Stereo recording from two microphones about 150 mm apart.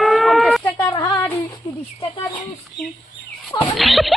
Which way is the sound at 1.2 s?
10° left (ahead or behind).